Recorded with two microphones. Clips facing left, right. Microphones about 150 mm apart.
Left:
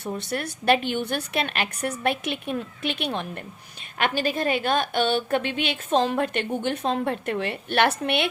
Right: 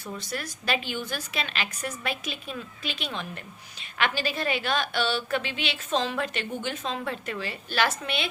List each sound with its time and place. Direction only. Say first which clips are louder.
0.2 s a woman's voice: left 5 dB; 60° left (ahead or behind)